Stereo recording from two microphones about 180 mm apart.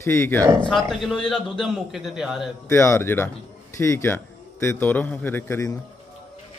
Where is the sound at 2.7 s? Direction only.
15° left (ahead or behind).